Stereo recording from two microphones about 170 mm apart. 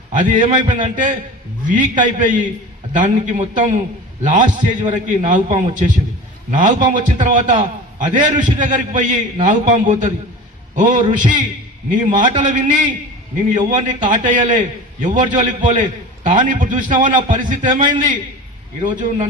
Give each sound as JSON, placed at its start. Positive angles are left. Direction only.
{"t": 0.1, "sound": "a man's voice", "side_deg": -50}